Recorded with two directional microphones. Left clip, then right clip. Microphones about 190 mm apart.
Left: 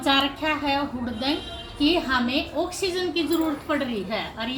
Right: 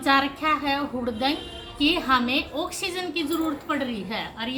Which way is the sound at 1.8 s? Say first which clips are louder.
Right 1 dB; 25° right (ahead or behind).